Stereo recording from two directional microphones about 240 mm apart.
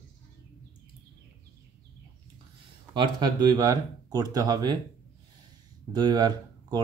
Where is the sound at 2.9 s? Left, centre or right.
Centre.